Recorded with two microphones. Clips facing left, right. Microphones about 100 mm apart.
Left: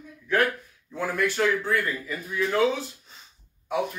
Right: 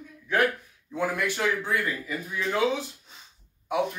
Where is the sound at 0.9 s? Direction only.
15° right (ahead or behind).